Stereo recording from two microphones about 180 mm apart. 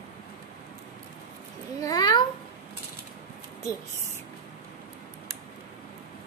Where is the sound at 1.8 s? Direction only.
20° left (ahead or behind).